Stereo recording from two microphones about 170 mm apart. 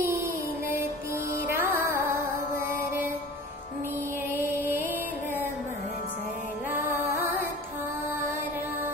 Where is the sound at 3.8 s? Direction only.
15° right (ahead or behind).